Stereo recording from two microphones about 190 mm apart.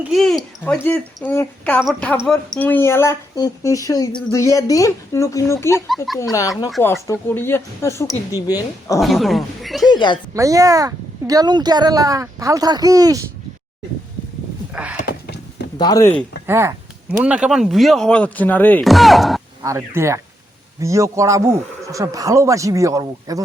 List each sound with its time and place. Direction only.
0.1 s speech: centre (ahead or behind)
6.1 s speech: centre (ahead or behind)
6.8 s speech: 15° left (ahead or behind)
9.0 s speech: centre (ahead or behind)
9.9 s speech: 25° left (ahead or behind)
10.3 s speech: 20° right (ahead or behind)
14.7 s a sound: 5° right (ahead or behind)
15.0 s a sound: 60° left (ahead or behind)
15.8 s speech: 20° left (ahead or behind)
16.5 s speech: 15° right (ahead or behind)
19.6 s speech: 15° right (ahead or behind)